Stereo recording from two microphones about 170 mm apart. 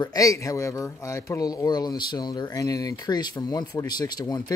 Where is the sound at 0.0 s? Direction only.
20° left (ahead or behind).